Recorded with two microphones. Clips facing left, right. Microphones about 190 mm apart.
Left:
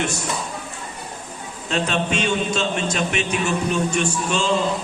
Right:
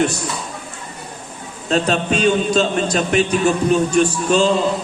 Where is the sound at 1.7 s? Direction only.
40° right (ahead or behind).